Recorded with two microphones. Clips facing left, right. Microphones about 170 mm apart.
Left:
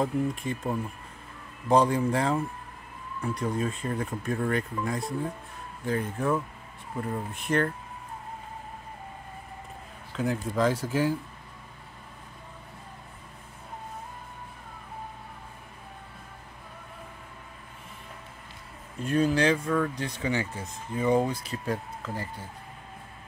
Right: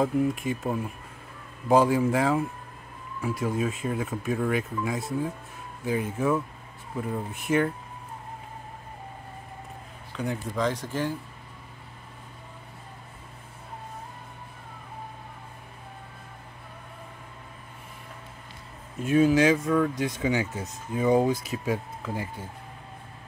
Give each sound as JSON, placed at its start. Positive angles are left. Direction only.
{"t": 0.0, "sound": "speech", "side_deg": 0}
{"t": 10.1, "sound": "speech", "side_deg": 0}
{"t": 19.0, "sound": "speech", "side_deg": -5}